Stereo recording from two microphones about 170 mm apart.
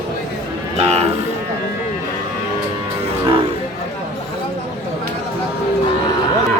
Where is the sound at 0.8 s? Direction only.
40° right (ahead or behind).